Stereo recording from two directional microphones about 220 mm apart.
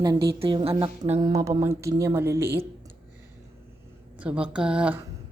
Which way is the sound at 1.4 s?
15° right (ahead or behind).